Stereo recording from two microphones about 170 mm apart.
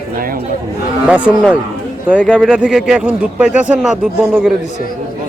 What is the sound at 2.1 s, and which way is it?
Speech, 5° left (ahead or behind).